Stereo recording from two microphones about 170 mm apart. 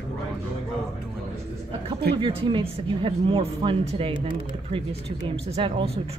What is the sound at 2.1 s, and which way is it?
Speech, 30° right (ahead or behind).